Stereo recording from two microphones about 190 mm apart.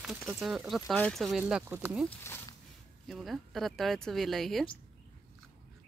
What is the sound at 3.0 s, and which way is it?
Speech, centre (ahead or behind).